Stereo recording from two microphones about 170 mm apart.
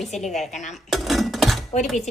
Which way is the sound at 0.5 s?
45° left (ahead or behind).